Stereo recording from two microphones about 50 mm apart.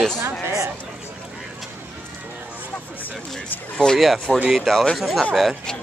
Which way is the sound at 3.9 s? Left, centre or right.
Centre.